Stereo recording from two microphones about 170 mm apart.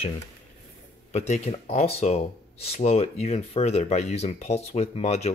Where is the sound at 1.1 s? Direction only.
40° left (ahead or behind).